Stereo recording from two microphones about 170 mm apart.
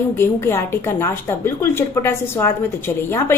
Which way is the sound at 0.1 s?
15° left (ahead or behind).